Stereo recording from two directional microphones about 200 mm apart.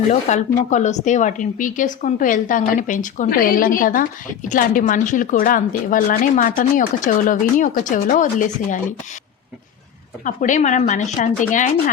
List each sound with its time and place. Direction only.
0.1 s a woman's voice: 35° left (ahead or behind)
10.2 s a woman's voice: 40° left (ahead or behind)